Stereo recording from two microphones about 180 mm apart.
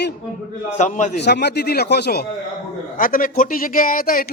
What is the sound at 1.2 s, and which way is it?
A man's voice, 70° left (ahead or behind).